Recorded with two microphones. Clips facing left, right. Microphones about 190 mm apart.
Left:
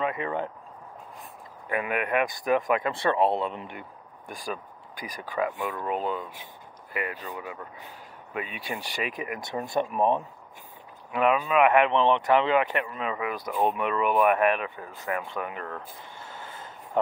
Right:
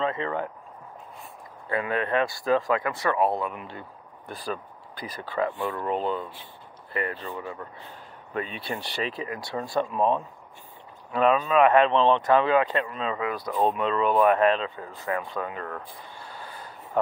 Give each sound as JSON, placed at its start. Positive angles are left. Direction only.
{"t": 0.0, "sound": "speech", "side_deg": 15}
{"t": 1.7, "sound": "speech", "side_deg": 15}
{"t": 4.3, "sound": "speech", "side_deg": 10}
{"t": 15.1, "sound": "a sound", "side_deg": 20}